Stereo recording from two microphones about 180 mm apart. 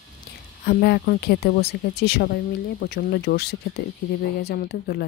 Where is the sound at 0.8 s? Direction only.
65° left (ahead or behind).